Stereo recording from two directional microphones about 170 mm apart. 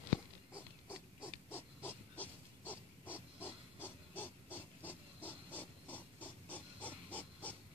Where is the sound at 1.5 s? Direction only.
10° left (ahead or behind).